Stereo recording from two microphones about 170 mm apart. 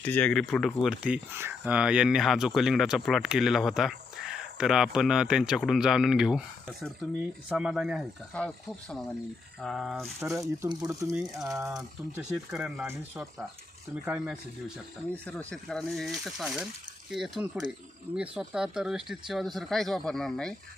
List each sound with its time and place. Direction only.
0.0 s speech: 10° left (ahead or behind)
10.2 s speech: 20° right (ahead or behind)
12.1 s speech: 5° right (ahead or behind)
15.1 s speech: 5° left (ahead or behind)